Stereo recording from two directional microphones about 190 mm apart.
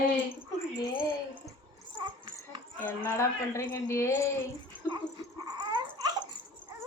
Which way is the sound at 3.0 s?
15° left (ahead or behind).